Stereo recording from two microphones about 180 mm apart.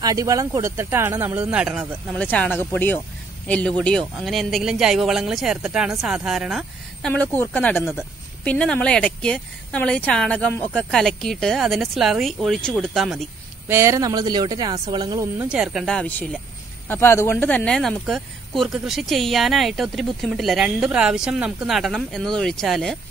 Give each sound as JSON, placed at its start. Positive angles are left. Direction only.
{"t": 0.0, "sound": "speech", "side_deg": -20}
{"t": 2.1, "sound": "speech", "side_deg": 5}
{"t": 7.8, "sound": "speech", "side_deg": -5}
{"t": 13.7, "sound": "speech", "side_deg": -15}
{"t": 15.3, "sound": "speech", "side_deg": -5}